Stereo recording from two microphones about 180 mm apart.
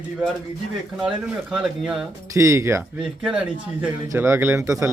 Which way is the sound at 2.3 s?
15° right (ahead or behind).